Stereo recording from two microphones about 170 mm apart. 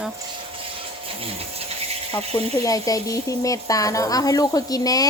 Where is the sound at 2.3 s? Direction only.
20° left (ahead or behind).